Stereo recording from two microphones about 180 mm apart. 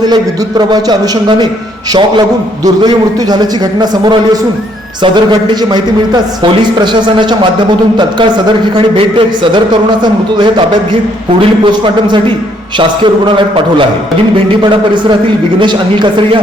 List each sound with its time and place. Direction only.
0.1 s a man's voice: 25° right (ahead or behind)
6.9 s a man's voice: 25° right (ahead or behind)
8.7 s a man's voice: 30° right (ahead or behind)
11.6 s a man's voice: 25° right (ahead or behind)
15.6 s a man's voice: 25° right (ahead or behind)